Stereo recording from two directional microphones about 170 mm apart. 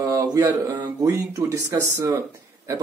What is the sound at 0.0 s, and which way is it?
Speech, 20° right (ahead or behind).